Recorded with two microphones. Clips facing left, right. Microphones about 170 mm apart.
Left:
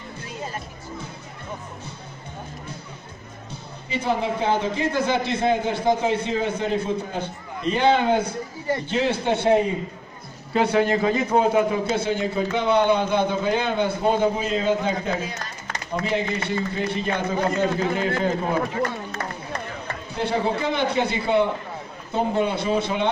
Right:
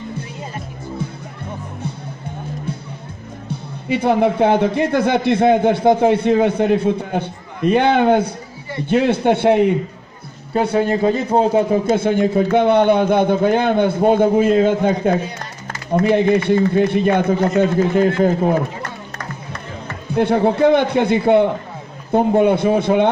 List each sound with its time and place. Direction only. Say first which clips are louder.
3.9 s a man's voice: right 9 dB; 60° right (ahead or behind)
10.7 s a man's voice: right 5 dB; 35° right (ahead or behind)
11.8 s a man's voice: right 7 dB; 50° right (ahead or behind)
20.2 s a man's voice: right 9 dB; 55° right (ahead or behind)